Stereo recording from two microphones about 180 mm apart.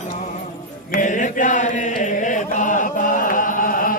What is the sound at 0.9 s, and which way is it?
Chant, 45° left (ahead or behind).